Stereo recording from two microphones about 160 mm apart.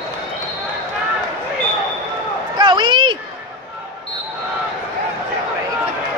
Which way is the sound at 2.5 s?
30° right (ahead or behind).